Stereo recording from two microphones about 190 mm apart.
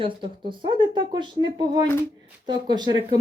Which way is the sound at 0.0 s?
25° right (ahead or behind).